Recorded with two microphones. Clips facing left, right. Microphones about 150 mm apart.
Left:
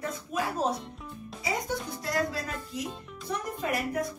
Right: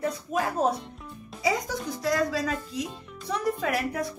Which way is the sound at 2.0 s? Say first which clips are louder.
Right 5 dB; 90° right.